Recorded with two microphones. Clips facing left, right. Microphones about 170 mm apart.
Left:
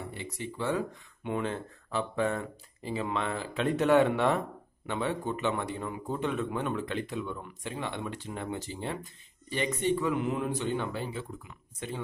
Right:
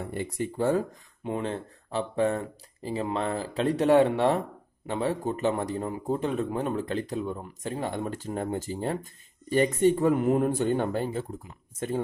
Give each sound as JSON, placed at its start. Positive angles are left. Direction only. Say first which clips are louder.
{"t": 0.0, "sound": "a man's voice", "louder": "right 7 dB", "side_deg": -50}